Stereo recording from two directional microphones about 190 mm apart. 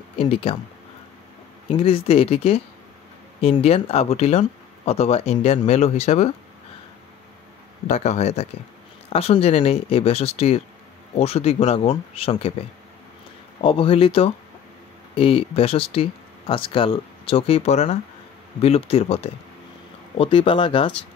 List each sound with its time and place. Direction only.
0.2 s speech: 30° left (ahead or behind)
1.7 s speech: 30° left (ahead or behind)
7.8 s speech: 40° left (ahead or behind)